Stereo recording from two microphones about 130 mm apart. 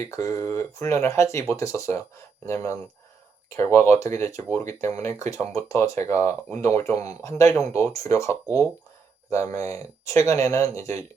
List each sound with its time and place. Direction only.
0.0 s speech: 20° left (ahead or behind)